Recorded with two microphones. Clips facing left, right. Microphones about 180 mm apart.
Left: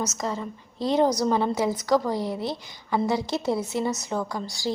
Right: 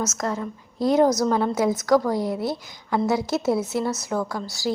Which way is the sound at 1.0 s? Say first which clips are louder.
Right 2 dB; 10° left (ahead or behind).